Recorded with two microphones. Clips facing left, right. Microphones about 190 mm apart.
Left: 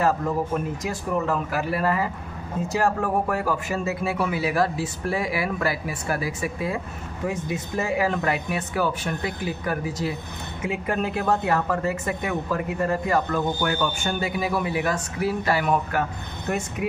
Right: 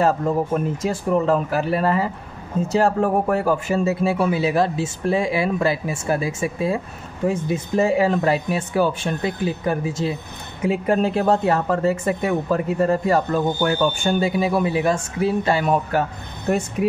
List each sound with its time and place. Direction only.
0.8 s speech: 30° right (ahead or behind)